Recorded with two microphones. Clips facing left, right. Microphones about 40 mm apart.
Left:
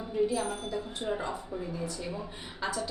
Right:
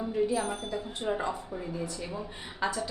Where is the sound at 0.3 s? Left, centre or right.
Centre.